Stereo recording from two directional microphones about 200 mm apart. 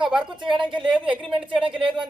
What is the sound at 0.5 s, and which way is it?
Speech, 25° right (ahead or behind).